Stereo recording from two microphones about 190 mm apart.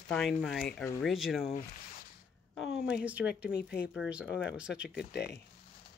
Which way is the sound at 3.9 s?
5° right (ahead or behind).